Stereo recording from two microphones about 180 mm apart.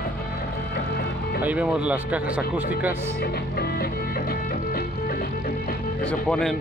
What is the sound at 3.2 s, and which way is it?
Music, 60° left (ahead or behind).